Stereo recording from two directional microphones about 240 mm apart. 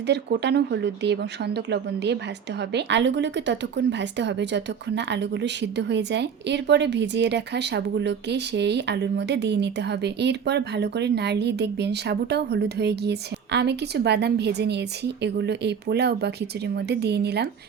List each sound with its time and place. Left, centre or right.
0.1 s a woman's voice: right